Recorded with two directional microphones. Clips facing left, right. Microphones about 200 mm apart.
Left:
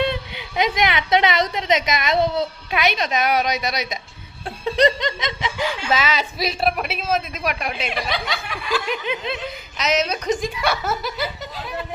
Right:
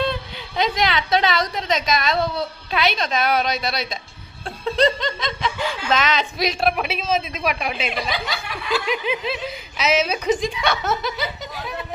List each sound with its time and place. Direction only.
0.0 s a woman's voice: 20° left (ahead or behind)
4.4 s snicker: 20° left (ahead or behind)
5.9 s a woman's voice: 5° left (ahead or behind)